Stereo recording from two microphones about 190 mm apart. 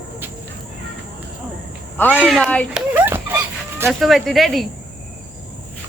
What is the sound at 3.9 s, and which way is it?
Speech, centre (ahead or behind).